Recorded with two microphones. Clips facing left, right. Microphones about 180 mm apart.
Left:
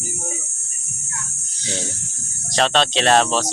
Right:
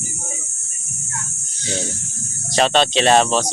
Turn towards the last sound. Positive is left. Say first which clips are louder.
# right 2 dB
turn(degrees=0)  # may be behind; listen again after turning